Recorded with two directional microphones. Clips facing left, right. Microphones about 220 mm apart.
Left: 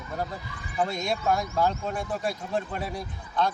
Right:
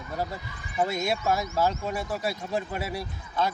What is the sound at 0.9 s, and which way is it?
Speech, 5° right (ahead or behind).